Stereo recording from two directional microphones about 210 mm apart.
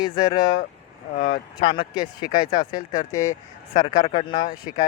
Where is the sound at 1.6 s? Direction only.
20° left (ahead or behind).